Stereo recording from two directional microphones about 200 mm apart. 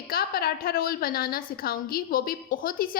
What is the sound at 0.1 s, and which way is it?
A woman's voice, 50° left (ahead or behind).